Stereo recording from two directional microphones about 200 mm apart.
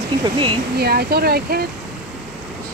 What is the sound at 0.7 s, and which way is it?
Speech, 50° right (ahead or behind).